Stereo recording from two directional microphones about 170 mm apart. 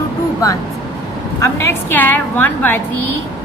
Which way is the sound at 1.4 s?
15° left (ahead or behind).